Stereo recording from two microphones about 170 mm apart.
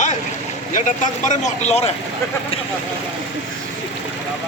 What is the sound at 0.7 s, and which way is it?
Speech, 45° left (ahead or behind).